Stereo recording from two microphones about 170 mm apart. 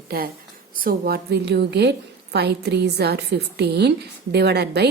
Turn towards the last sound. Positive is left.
turn(degrees=-75)  # may be behind; listen again after turning